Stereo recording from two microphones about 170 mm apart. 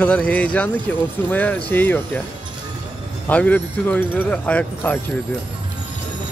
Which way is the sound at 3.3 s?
10° left (ahead or behind).